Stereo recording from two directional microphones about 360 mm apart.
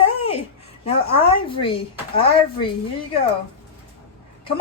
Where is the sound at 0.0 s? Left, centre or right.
Centre.